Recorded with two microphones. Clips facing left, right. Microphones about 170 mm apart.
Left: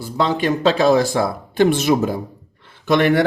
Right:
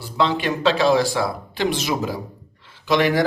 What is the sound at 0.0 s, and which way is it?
A man's voice, 45° left (ahead or behind).